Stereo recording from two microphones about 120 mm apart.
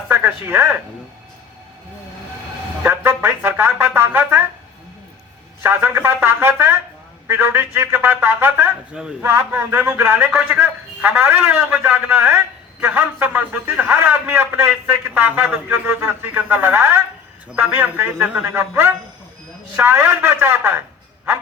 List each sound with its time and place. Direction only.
0.1 s speech: 15° right (ahead or behind)
2.8 s a man's voice: 20° right (ahead or behind)
5.6 s a man's voice: 20° right (ahead or behind)